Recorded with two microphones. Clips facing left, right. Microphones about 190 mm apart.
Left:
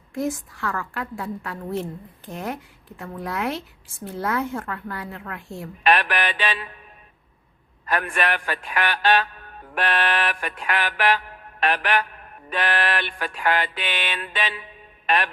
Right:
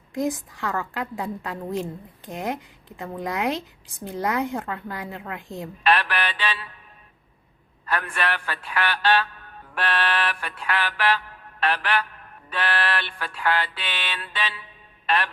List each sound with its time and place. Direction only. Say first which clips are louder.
0.1 s a woman's voice: right 1 dB; 15° right (ahead or behind)
5.8 s a man's voice: left 2 dB; 15° left (ahead or behind)
7.9 s a man's voice: left 3 dB; 15° left (ahead or behind)